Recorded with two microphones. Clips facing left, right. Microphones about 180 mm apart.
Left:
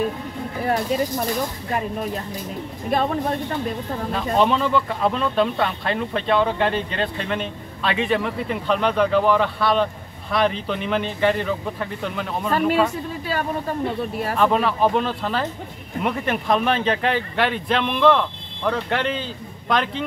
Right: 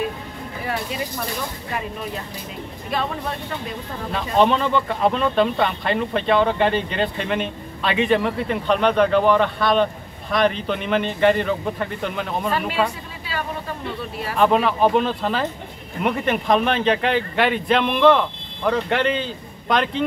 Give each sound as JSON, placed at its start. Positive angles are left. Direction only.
{"t": 0.7, "sound": "speech", "side_deg": 45}
{"t": 2.9, "sound": "speech", "side_deg": 45}
{"t": 4.1, "sound": "speech", "side_deg": 5}
{"t": 12.4, "sound": "speech", "side_deg": 45}
{"t": 14.4, "sound": "speech", "side_deg": 0}